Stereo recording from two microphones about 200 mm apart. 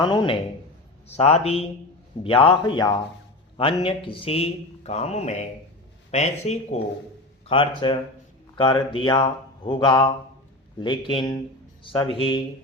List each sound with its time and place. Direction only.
0.0 s speech: 25° left (ahead or behind)